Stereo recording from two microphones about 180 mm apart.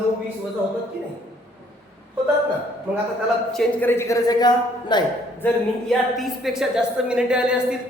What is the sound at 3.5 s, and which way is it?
A woman's voice, 10° left (ahead or behind).